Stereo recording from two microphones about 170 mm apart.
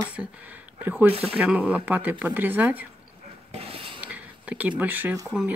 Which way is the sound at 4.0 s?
10° right (ahead or behind).